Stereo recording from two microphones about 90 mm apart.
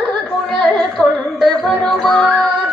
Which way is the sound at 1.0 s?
15° left (ahead or behind).